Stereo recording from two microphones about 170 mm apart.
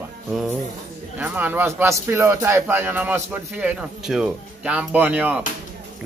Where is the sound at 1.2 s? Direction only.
10° right (ahead or behind).